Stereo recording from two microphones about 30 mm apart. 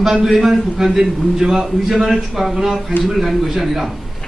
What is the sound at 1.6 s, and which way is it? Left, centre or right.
A man's voice, centre.